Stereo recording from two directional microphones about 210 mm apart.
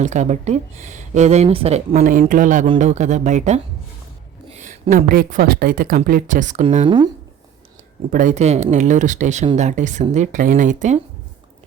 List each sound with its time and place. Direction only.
0.0 s speech: 35° right (ahead or behind)
8.1 s speech: 35° right (ahead or behind)